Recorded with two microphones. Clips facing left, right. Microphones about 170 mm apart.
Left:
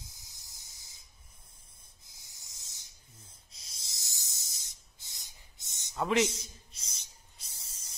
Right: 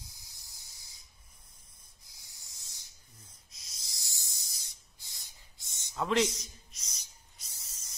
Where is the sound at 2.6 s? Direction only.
20° left (ahead or behind).